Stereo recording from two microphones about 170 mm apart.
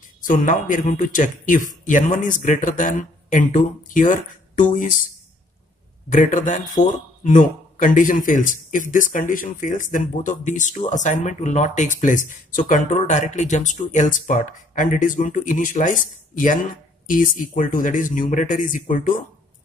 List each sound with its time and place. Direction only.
0.2 s speech: 50° left (ahead or behind)
6.0 s speech: 50° left (ahead or behind)